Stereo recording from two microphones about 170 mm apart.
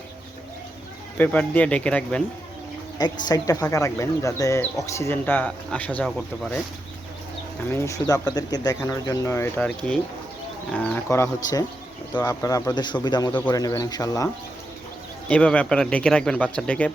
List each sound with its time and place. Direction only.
1.2 s speech: 10° left (ahead or behind)
3.0 s speech: 25° left (ahead or behind); by 6.6 s centre (ahead or behind)
7.7 s speech: 15° left (ahead or behind)
9.6 s speech: 5° left (ahead or behind)
15.3 s speech: 5° left (ahead or behind)